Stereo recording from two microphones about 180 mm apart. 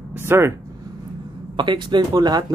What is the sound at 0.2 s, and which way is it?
Speech, 15° right (ahead or behind).